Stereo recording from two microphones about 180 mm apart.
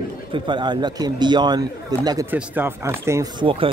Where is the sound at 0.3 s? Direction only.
25° right (ahead or behind).